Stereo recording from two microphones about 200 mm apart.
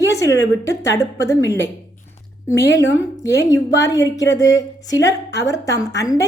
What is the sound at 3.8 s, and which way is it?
A woman's voice, 15° left (ahead or behind).